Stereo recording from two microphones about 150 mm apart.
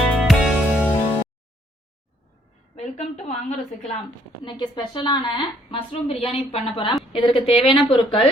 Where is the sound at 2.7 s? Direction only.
50° left (ahead or behind).